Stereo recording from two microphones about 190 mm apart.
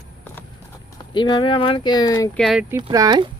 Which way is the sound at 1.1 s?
25° left (ahead or behind).